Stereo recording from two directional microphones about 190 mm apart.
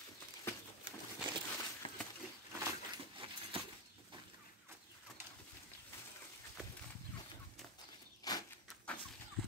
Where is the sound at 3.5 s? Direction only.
30° right (ahead or behind).